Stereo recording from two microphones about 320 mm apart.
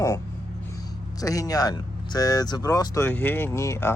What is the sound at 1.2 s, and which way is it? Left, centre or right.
Speech, centre.